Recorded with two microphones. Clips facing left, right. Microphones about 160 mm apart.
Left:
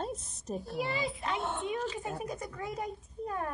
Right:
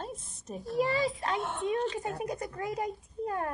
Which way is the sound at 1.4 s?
Centre (ahead or behind).